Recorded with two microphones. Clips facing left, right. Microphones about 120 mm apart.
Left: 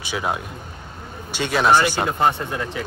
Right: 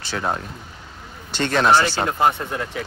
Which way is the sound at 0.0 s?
10° left (ahead or behind).